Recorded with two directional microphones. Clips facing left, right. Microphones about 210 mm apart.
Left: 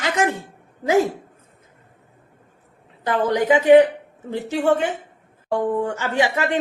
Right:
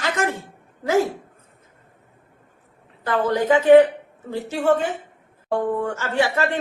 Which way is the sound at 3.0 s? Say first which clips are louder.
Left 1 dB; 15° left (ahead or behind).